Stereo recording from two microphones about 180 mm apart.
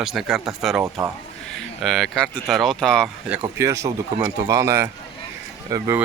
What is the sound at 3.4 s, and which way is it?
Speech, 15° right (ahead or behind).